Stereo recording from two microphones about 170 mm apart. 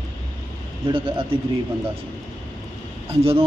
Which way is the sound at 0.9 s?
30° right (ahead or behind).